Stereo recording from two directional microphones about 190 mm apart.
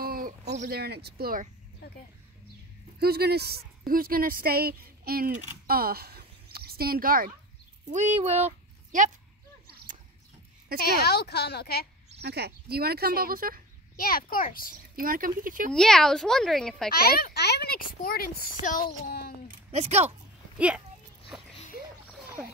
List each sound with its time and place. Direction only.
0.0 s a sound: 50° right (ahead or behind)
0.7 s speech: 55° right (ahead or behind)
3.0 s a woman's voice: 55° right (ahead or behind)
7.9 s speech: 35° right (ahead or behind)
10.8 s a woman's voice: 55° left (ahead or behind)
12.2 s speech: 60° right (ahead or behind)
13.9 s speech: 50° left (ahead or behind)
15.0 s speech: 45° right (ahead or behind)
15.7 s speech: 5° left (ahead or behind)
16.9 s speech: 55° left (ahead or behind)
19.7 s speech: 35° right (ahead or behind)
20.5 s speech: 5° right (ahead or behind)